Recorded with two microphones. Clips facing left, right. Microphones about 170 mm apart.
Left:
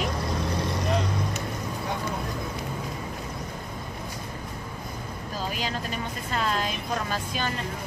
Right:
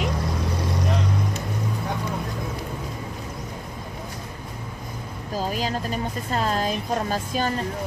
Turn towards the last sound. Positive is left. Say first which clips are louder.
# right 5 dB
turn(degrees=-40)  # may be behind; listen again after turning